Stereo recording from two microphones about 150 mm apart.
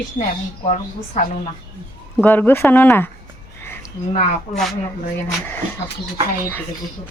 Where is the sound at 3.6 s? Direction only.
15° left (ahead or behind).